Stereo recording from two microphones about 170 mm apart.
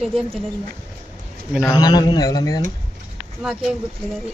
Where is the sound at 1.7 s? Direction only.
25° left (ahead or behind).